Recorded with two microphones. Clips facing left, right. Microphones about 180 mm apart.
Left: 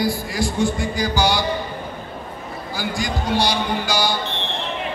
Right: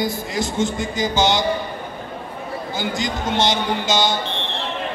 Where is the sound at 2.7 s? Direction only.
20° right (ahead or behind).